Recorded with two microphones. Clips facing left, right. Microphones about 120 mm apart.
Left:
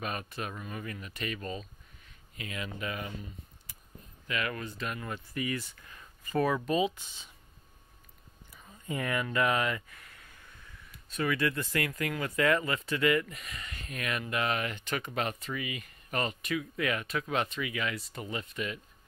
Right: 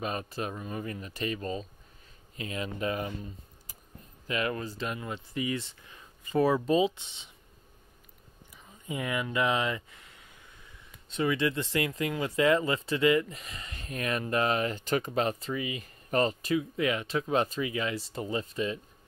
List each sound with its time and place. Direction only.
0.0 s speech: 30° right (ahead or behind)
4.3 s speech: 30° right (ahead or behind)
8.8 s speech: 15° right (ahead or behind)